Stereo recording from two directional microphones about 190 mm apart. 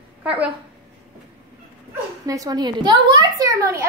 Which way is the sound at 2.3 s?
20° right (ahead or behind).